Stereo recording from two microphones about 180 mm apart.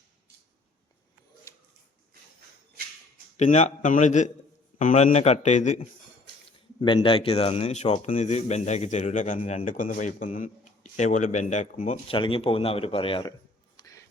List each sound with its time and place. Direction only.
1.5 s a sound: 15° left (ahead or behind)
3.3 s speech: 40° left (ahead or behind)
6.8 s speech: 25° left (ahead or behind); by 9.4 s 45° left (ahead or behind)
9.4 s speech: 30° left (ahead or behind)
9.6 s speech: 50° left (ahead or behind); by 13.3 s 30° left (ahead or behind)
13.7 s a sound: 20° left (ahead or behind)